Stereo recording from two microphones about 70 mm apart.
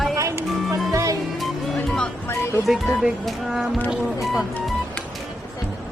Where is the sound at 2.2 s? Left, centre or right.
Left.